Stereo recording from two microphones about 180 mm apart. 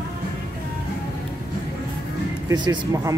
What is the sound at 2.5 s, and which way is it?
Speech, 20° right (ahead or behind).